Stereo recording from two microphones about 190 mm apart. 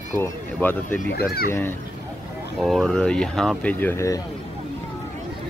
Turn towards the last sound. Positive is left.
turn(degrees=15)  # may be behind; listen again after turning